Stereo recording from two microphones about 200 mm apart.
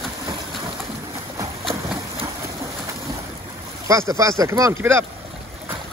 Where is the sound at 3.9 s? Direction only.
15° right (ahead or behind).